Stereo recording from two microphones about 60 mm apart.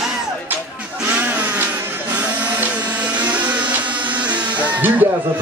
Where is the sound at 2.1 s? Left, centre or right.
Right.